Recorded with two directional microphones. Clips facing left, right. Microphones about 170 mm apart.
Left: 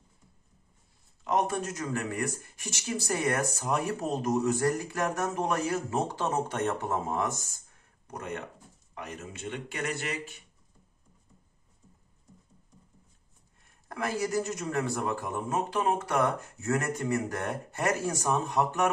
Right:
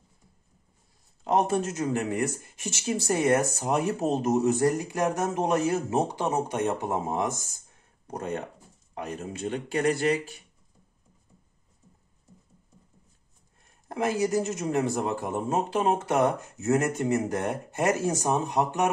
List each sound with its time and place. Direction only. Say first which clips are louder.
1.2 s speech: right 4 dB; 30° right (ahead or behind)
8.1 s speech: right 5 dB; 30° right (ahead or behind)
13.8 s speech: right 5 dB; 20° right (ahead or behind)